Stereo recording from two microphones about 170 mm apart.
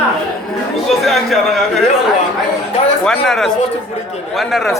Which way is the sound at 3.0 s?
5° left (ahead or behind).